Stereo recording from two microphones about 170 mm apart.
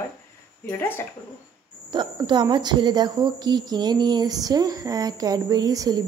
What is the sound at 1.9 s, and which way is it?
A woman's voice, 25° right (ahead or behind).